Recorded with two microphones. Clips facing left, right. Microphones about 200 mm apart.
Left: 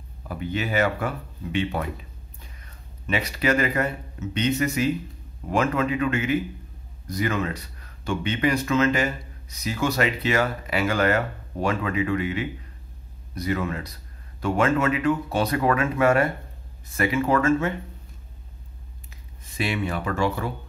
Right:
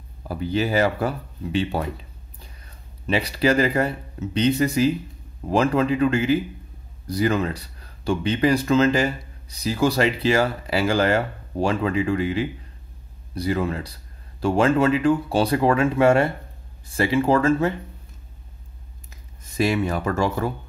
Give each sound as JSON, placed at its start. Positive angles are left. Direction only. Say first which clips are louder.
{"t": 0.3, "sound": "speech", "louder": "right 4 dB", "side_deg": -35}
{"t": 3.1, "sound": "speech", "louder": "right 3 dB", "side_deg": -30}
{"t": 19.0, "sound": "speech", "louder": "even", "side_deg": -40}